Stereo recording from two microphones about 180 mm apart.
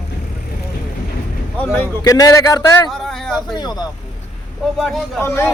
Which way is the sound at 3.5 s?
20° left (ahead or behind).